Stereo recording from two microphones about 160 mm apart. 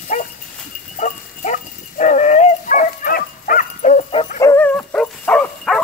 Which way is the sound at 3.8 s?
50° left (ahead or behind).